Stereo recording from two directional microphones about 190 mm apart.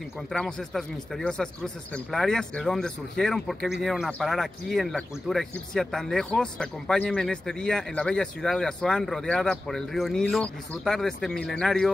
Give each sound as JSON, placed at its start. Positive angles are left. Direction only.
{"t": 0.3, "sound": "speech", "side_deg": 5}